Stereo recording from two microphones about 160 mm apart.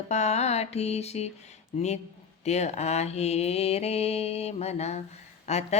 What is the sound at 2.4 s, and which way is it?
Mantra, 45° left (ahead or behind).